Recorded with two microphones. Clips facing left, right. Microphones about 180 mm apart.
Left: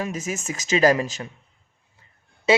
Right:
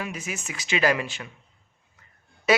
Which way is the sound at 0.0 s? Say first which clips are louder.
Left 5 dB; 45° left (ahead or behind).